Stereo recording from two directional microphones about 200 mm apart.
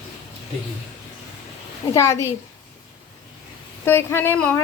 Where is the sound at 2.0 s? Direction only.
15° left (ahead or behind).